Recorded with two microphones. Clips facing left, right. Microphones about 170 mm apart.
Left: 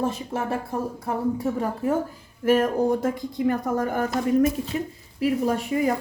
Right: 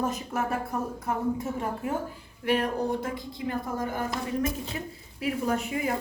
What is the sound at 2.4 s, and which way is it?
Speech, 45° left (ahead or behind).